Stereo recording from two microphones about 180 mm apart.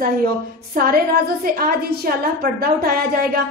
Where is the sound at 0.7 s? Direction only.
55° right (ahead or behind).